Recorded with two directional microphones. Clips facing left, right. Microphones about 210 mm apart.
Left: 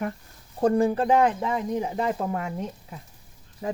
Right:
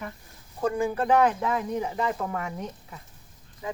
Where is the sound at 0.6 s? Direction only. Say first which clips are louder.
Left 5 dB; 35° left (ahead or behind).